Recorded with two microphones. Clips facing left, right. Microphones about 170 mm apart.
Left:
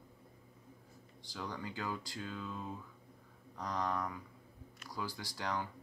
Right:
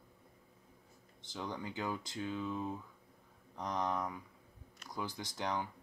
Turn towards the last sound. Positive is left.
turn(degrees=-20)  # may be behind; listen again after turning